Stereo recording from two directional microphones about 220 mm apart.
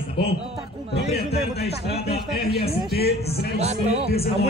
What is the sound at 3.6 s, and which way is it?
Speech, 30° right (ahead or behind).